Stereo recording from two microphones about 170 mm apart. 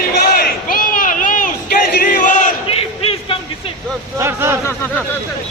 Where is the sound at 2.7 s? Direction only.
35° left (ahead or behind).